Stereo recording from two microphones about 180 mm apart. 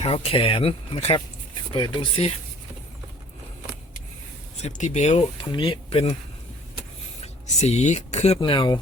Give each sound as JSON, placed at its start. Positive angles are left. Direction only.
{"t": 0.0, "sound": "speech", "side_deg": 30}
{"t": 4.5, "sound": "speech", "side_deg": 35}
{"t": 7.2, "sound": "speech", "side_deg": 40}
{"t": 8.4, "sound": "speech", "side_deg": 25}